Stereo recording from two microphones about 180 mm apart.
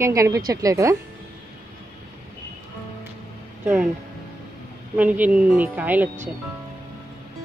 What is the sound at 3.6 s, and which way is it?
Speech, 5° right (ahead or behind).